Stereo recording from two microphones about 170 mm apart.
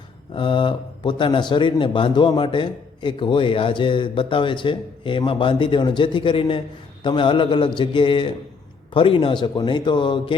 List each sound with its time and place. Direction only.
0.3 s a man's voice: 30° left (ahead or behind)